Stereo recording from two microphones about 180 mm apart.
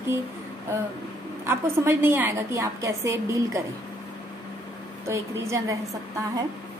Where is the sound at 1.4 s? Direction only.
10° right (ahead or behind).